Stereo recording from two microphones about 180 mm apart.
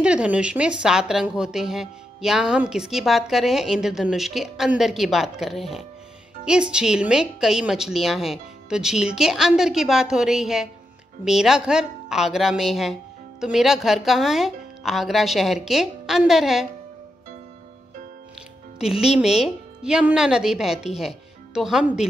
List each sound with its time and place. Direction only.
0.0 s a woman's voice: 5° right (ahead or behind)
18.8 s a woman's voice: 5° right (ahead or behind)